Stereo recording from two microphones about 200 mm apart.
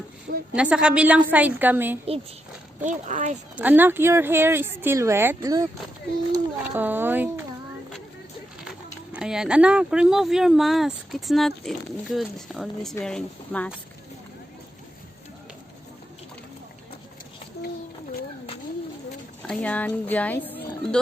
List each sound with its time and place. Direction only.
0.5 s speech: 5° right (ahead or behind)
2.8 s speech: 40° right (ahead or behind)
3.5 s speech: 10° right (ahead or behind)
9.1 s speech: 5° right (ahead or behind)
19.4 s speech: 5° left (ahead or behind)